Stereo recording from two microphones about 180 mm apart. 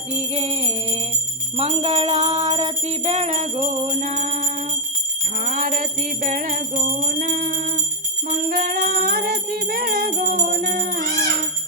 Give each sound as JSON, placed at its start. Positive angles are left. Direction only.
{"t": 0.3, "sound": "jingle bell", "side_deg": -35}
{"t": 8.4, "sound": "music", "side_deg": -50}